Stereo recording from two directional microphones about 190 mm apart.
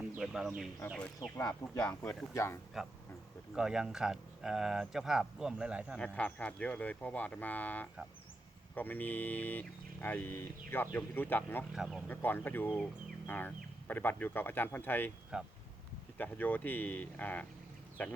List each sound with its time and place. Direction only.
0.2 s speech: 5° right (ahead or behind)
1.4 s speech: 20° left (ahead or behind)
1.8 s speech: 5° left (ahead or behind)
3.5 s speech: 5° right (ahead or behind)
6.0 s speech: 5° left (ahead or behind)
11.7 s speech: 5° right (ahead or behind)
12.0 s speech: 10° left (ahead or behind)
15.3 s speech: 5° right (ahead or behind)
16.1 s speech: 10° left (ahead or behind)